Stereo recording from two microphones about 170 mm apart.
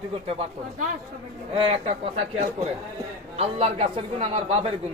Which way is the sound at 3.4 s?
35° right (ahead or behind).